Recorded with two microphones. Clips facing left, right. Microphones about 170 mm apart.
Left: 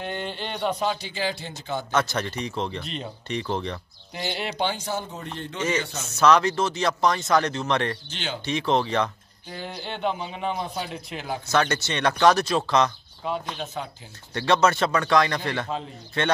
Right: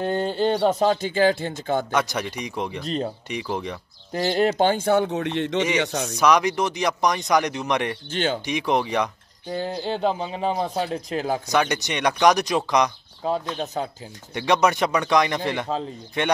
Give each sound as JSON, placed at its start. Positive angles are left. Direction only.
{"t": 0.0, "sound": "speech", "side_deg": -40}
{"t": 1.9, "sound": "speech", "side_deg": -15}
{"t": 4.1, "sound": "speech", "side_deg": -45}
{"t": 6.1, "sound": "speech", "side_deg": -15}
{"t": 8.1, "sound": "speech", "side_deg": -50}
{"t": 8.5, "sound": "speech", "side_deg": -15}
{"t": 9.5, "sound": "a man's voice", "side_deg": -35}
{"t": 11.4, "sound": "speech", "side_deg": -15}
{"t": 13.2, "sound": "a man's voice", "side_deg": -35}
{"t": 14.3, "sound": "speech", "side_deg": -15}